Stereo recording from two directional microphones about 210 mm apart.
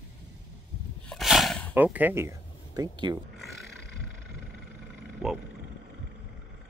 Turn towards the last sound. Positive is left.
turn(degrees=0)  # may be behind; listen again after turning